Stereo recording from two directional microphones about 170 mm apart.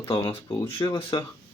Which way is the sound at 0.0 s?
15° left (ahead or behind).